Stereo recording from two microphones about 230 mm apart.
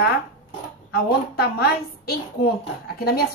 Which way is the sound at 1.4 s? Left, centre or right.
Left.